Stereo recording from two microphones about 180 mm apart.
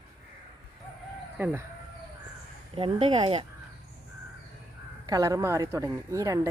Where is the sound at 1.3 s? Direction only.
10° right (ahead or behind).